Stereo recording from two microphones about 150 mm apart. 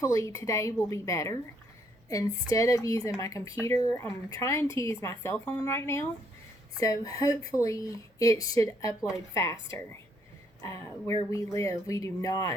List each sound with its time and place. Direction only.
0.0 s speech: 20° left (ahead or behind)